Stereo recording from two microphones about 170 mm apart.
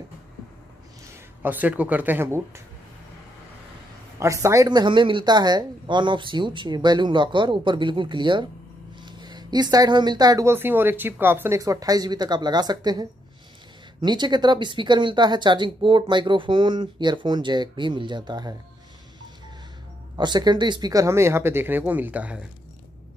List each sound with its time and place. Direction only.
1.0 s speech: 10° right (ahead or behind)
4.2 s speech: 15° right (ahead or behind)
20.2 s speech: 25° right (ahead or behind); by 22.4 s 10° right (ahead or behind)